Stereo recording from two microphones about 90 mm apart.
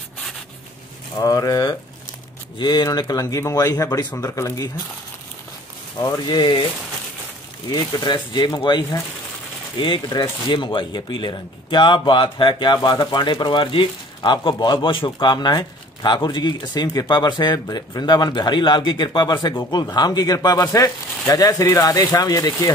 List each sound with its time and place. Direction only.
1.1 s speech: 40° left (ahead or behind)
5.9 s a man's voice: 45° left (ahead or behind)
7.7 s a man's voice: 55° left (ahead or behind)